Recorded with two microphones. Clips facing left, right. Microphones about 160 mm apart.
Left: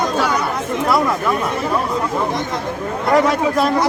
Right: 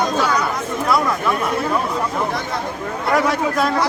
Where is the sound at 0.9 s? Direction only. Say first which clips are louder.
Left 1 dB; 15° left (ahead or behind).